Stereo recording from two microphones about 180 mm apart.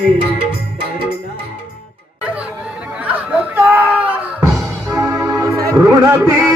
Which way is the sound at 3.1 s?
10° right (ahead or behind).